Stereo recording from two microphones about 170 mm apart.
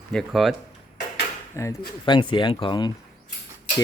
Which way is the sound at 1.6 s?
20° left (ahead or behind).